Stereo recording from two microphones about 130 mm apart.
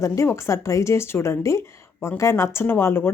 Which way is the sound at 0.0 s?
20° left (ahead or behind).